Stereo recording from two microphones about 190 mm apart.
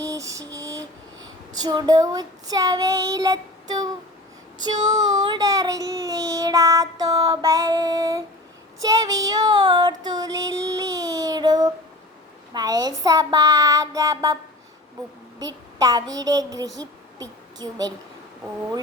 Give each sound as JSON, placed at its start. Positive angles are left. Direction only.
{"t": 0.3, "sound": "a sound", "side_deg": -15}
{"t": 1.6, "sound": "child singing", "side_deg": -20}
{"t": 15.8, "sound": "child singing", "side_deg": -20}
{"t": 17.2, "sound": "a woman's voice", "side_deg": -20}